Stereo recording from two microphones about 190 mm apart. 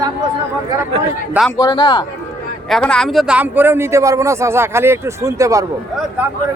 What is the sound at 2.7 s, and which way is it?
A man's voice, 5° left (ahead or behind).